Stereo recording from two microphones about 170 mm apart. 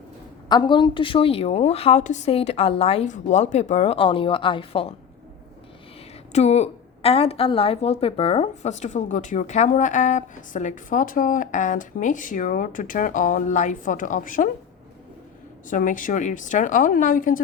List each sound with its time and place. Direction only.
0.4 s a woman's voice: 25° left (ahead or behind)
6.3 s a woman's voice: 40° left (ahead or behind)
15.7 s a woman's voice: 50° left (ahead or behind)